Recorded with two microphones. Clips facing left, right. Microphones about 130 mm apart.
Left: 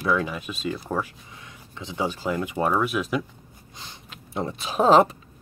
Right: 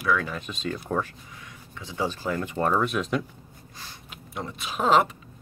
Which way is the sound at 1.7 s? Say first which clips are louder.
Left 1 dB; 20° left (ahead or behind).